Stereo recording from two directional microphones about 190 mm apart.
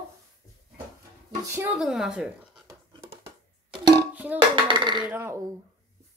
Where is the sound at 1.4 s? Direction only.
10° right (ahead or behind).